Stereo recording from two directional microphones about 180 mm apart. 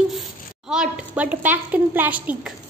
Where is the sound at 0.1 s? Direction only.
Centre (ahead or behind).